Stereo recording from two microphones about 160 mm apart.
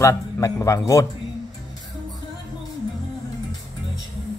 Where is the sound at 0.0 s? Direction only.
15° left (ahead or behind).